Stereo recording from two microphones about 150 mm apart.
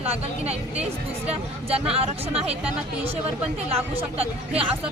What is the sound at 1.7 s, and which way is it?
Speech, 40° right (ahead or behind).